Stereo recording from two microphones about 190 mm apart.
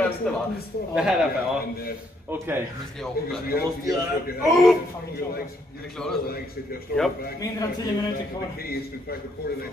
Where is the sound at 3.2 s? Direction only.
55° left (ahead or behind).